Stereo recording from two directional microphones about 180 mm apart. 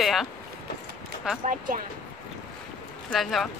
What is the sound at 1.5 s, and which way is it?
Speech, 50° right (ahead or behind).